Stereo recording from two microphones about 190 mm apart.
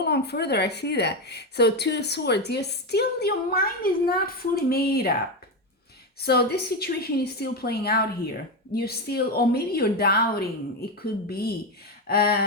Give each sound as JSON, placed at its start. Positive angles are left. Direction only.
{"t": 0.0, "sound": "a woman's voice", "side_deg": 60}
{"t": 6.1, "sound": "a woman's voice", "side_deg": 55}